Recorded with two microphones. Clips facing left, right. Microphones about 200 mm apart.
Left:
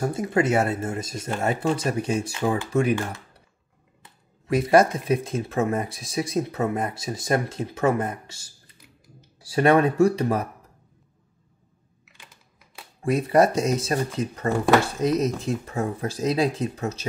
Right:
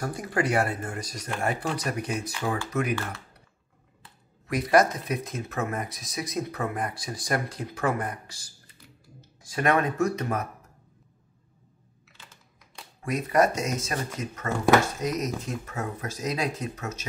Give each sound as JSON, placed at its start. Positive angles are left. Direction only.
{"t": 0.0, "sound": "speech", "side_deg": 25}
{"t": 4.5, "sound": "speech", "side_deg": 25}
{"t": 13.0, "sound": "speech", "side_deg": 30}